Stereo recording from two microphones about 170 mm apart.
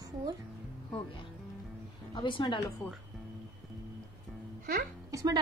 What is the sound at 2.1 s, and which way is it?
Speech, 25° left (ahead or behind).